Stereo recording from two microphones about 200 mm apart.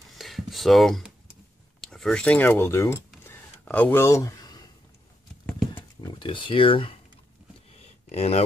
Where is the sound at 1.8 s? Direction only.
Centre (ahead or behind).